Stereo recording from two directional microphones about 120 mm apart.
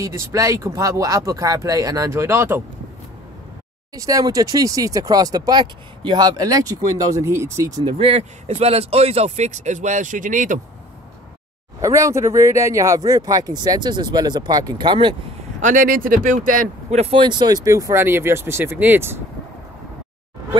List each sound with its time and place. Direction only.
0.0 s speech: 30° right (ahead or behind)
3.9 s speech: 30° right (ahead or behind)
8.0 s speech: 60° right (ahead or behind); by 10.6 s 90° right
11.8 s speech: 25° right (ahead or behind)
15.6 s speech: 90° right; by 17.2 s 60° right (ahead or behind)
17.2 s speech: 40° right (ahead or behind); by 19.2 s 20° right (ahead or behind)